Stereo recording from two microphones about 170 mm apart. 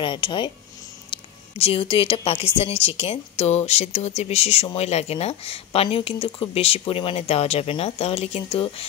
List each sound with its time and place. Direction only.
0.0 s speech: 30° left (ahead or behind)